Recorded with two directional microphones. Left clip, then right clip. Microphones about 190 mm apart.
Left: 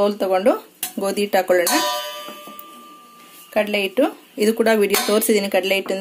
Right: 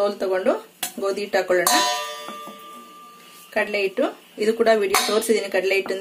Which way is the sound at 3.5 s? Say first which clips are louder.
Left 3 dB; 45° left (ahead or behind).